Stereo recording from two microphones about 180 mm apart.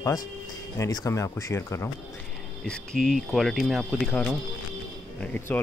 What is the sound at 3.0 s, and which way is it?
Speech, centre (ahead or behind).